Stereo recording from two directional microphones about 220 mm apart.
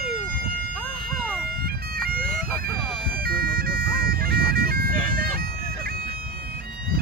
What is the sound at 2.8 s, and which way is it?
Bagpipes, centre (ahead or behind).